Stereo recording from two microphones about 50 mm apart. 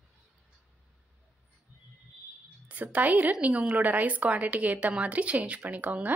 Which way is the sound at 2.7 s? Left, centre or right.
Right.